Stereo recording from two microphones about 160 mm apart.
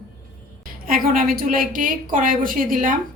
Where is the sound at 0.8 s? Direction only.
65° right (ahead or behind).